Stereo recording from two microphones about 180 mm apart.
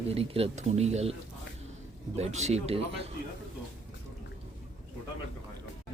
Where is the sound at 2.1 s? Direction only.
40° right (ahead or behind).